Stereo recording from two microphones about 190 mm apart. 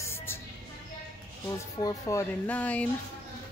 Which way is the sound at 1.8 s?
15° left (ahead or behind).